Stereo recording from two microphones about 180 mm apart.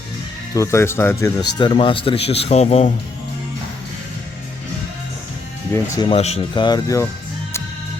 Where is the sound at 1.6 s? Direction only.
25° left (ahead or behind).